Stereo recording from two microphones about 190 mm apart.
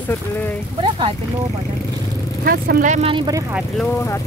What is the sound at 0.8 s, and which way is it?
Speech, 25° right (ahead or behind).